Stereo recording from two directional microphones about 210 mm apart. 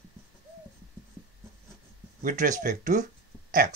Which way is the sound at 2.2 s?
40° right (ahead or behind).